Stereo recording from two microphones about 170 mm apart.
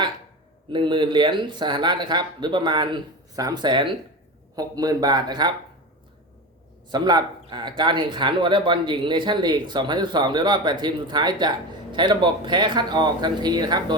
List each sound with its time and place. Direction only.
0.7 s speech: 25° right (ahead or behind)
6.9 s speech: 25° right (ahead or behind)